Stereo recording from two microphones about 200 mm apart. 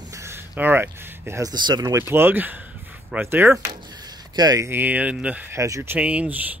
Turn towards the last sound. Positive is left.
turn(degrees=-5)  # may be behind; listen again after turning